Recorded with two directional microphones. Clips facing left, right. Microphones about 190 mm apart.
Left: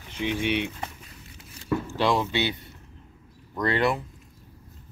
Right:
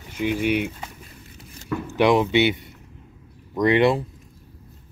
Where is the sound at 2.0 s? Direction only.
20° right (ahead or behind).